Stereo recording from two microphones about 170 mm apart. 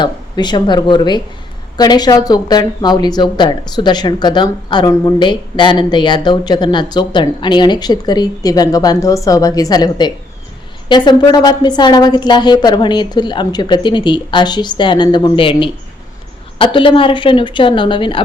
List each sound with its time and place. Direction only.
0.0 s speech: 25° left (ahead or behind)